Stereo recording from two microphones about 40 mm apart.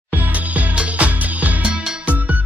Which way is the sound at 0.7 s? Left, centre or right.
Right.